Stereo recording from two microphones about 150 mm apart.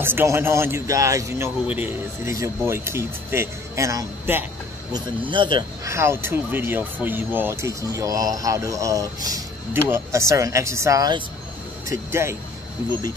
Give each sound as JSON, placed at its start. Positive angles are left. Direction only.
{"t": 0.0, "sound": "speech", "side_deg": -15}
{"t": 4.9, "sound": "speech", "side_deg": -35}
{"t": 5.9, "sound": "speech", "side_deg": -20}